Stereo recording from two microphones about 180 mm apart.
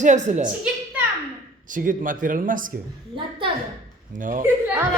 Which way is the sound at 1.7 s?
45° right (ahead or behind).